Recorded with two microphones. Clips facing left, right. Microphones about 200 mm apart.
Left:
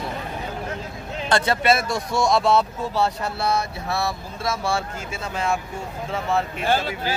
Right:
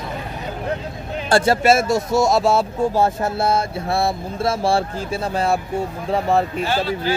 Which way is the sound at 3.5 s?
30° right (ahead or behind).